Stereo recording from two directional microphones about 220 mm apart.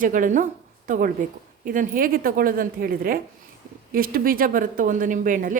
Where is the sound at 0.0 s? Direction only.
35° right (ahead or behind).